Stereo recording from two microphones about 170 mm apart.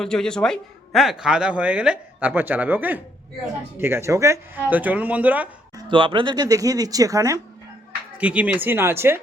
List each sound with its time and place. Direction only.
0.0 s speech: 5° left (ahead or behind)
5.7 s speech: 30° right (ahead or behind)
8.2 s speech: 10° right (ahead or behind)